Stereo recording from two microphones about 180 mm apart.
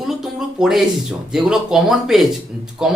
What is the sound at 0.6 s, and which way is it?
A man's voice, 5° right (ahead or behind).